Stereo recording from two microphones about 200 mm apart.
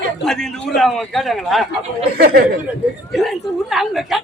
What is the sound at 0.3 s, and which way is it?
A man's voice, 5° left (ahead or behind).